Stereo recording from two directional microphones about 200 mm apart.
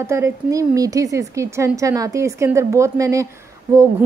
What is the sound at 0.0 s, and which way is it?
A woman's voice, 15° right (ahead or behind).